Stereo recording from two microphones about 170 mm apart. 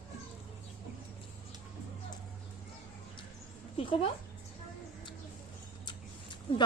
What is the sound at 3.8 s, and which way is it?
Speech, 30° left (ahead or behind).